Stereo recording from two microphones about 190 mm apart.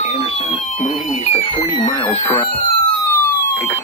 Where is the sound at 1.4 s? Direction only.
25° left (ahead or behind).